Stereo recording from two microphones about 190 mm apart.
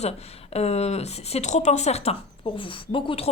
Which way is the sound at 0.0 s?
35° left (ahead or behind).